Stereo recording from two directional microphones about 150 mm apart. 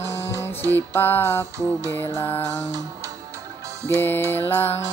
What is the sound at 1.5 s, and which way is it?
Music, 20° right (ahead or behind).